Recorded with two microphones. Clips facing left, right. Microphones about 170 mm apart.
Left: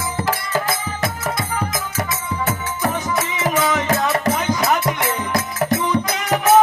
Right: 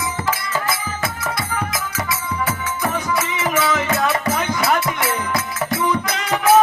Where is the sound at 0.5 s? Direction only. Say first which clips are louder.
Left 2 dB; 40° left (ahead or behind).